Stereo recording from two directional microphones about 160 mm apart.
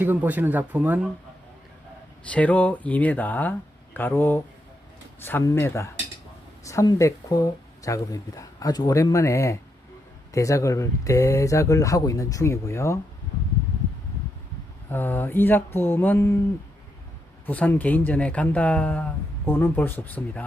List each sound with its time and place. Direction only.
0.0 s speech: 10° right (ahead or behind)
2.3 s speech: 10° left (ahead or behind)
14.8 s speech: 15° left (ahead or behind)
17.4 s speech: 10° left (ahead or behind)